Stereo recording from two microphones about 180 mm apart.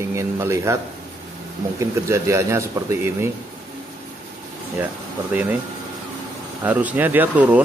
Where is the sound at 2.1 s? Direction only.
15° right (ahead or behind).